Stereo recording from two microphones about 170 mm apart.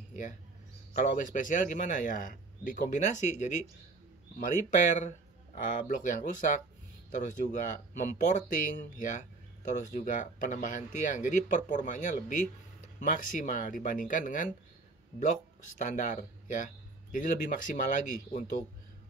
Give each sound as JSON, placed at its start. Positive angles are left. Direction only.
{"t": 1.1, "sound": "speech", "side_deg": 50}
{"t": 4.6, "sound": "speech", "side_deg": 45}
{"t": 15.8, "sound": "speech", "side_deg": 45}